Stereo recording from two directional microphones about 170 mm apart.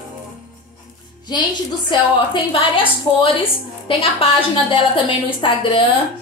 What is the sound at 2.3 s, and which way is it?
Speech, 30° left (ahead or behind).